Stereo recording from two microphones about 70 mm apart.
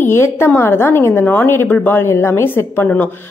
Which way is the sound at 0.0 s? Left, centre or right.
Left.